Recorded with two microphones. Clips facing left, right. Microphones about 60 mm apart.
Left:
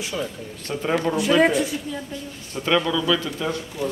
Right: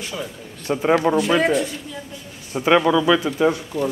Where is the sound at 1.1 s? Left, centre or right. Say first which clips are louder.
Right 5 dB; right.